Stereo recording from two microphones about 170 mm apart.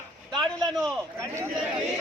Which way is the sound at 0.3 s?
Centre (ahead or behind).